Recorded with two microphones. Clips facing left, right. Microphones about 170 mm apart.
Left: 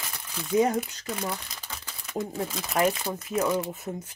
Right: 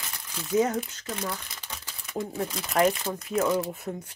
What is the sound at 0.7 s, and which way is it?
Speech, 15° left (ahead or behind).